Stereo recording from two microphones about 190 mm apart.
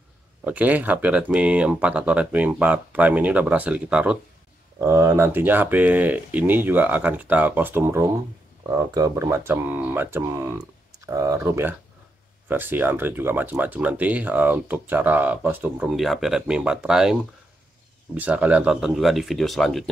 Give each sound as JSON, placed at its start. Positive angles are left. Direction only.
{"t": 0.4, "sound": "speech", "side_deg": -10}